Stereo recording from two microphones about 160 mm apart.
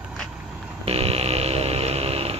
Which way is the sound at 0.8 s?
40° right (ahead or behind).